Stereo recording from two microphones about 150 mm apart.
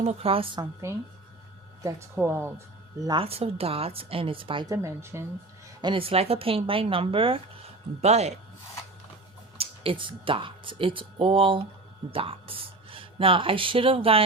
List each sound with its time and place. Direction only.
0.0 s speech: 45° right (ahead or behind)
1.8 s speech: 15° right (ahead or behind)
3.0 s a woman's voice: 30° right (ahead or behind)
3.2 s speech: 40° right (ahead or behind)
4.6 s a woman's voice: 20° right (ahead or behind)
5.8 s speech: 35° right (ahead or behind)
9.6 s speech: 35° right (ahead or behind)